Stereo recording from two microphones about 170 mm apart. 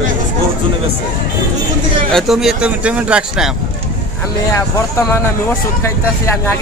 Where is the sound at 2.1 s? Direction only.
Centre (ahead or behind).